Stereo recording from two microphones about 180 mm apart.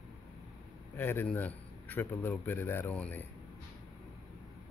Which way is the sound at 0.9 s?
10° left (ahead or behind).